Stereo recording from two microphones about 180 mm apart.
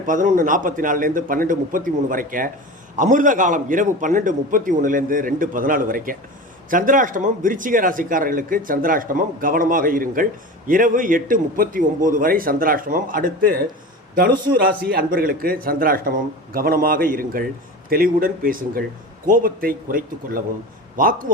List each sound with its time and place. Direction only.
0.0 s a man's voice: 45° right (ahead or behind)